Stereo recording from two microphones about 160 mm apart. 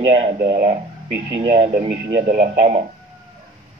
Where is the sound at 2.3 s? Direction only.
40° right (ahead or behind).